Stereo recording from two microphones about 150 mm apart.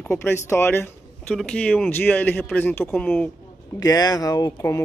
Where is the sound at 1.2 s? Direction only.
5° left (ahead or behind).